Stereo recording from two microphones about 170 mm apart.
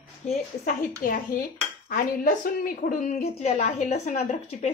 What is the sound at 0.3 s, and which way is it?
A woman's voice, 55° left (ahead or behind).